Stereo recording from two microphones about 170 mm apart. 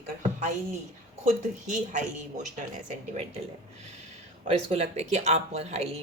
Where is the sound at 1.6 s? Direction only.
50° right (ahead or behind).